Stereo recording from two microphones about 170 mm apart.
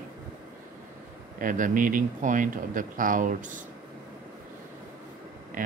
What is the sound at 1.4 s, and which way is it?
Speech, 50° right (ahead or behind).